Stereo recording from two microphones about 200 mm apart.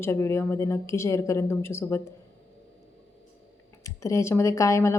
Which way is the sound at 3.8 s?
15° left (ahead or behind).